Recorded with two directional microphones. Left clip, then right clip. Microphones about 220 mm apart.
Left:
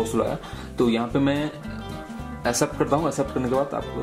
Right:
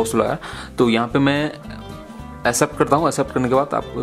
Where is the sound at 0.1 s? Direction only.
25° right (ahead or behind).